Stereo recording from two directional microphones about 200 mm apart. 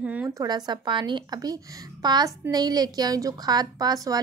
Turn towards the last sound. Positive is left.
turn(degrees=-20)  # may be behind; listen again after turning